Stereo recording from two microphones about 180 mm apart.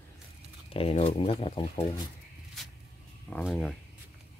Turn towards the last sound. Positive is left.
turn(degrees=5)  # may be behind; listen again after turning